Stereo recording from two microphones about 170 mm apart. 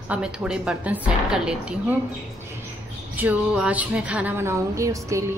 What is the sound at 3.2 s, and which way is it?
Speech, 10° right (ahead or behind).